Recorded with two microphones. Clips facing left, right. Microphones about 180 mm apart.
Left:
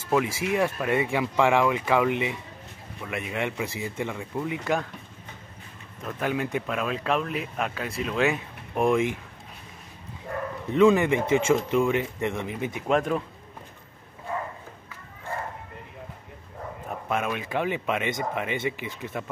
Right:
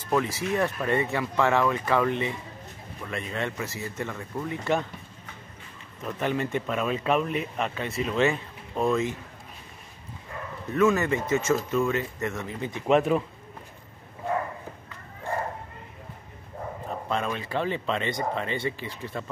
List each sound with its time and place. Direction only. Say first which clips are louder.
0.1 s speech: left 1 dB; 10° left (ahead or behind)
6.0 s speech: even; centre (ahead or behind)
8.7 s speech: left 2 dB; 15° left (ahead or behind)
10.7 s speech: left 3 dB; 15° left (ahead or behind)
12.8 s speech: right 3 dB; 5° right (ahead or behind)
17.1 s speech: left 1 dB; 10° left (ahead or behind)